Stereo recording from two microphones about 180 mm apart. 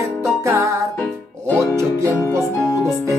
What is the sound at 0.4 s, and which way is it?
Music, 15° right (ahead or behind).